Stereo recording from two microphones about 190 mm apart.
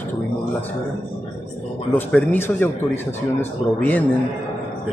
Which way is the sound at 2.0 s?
10° left (ahead or behind).